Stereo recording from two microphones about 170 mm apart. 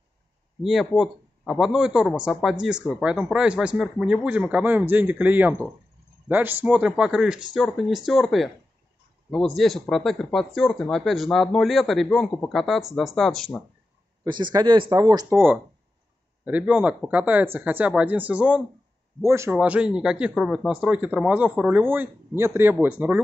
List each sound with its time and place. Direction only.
0.6 s speech: centre (ahead or behind)
14.2 s speech: 25° right (ahead or behind)
15.2 s speech: 10° right (ahead or behind)